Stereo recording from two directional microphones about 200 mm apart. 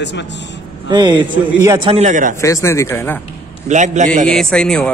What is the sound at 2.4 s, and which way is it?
Speech, 15° left (ahead or behind).